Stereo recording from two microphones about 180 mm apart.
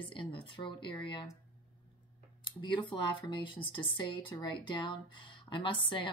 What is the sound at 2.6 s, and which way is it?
Speech, 25° left (ahead or behind).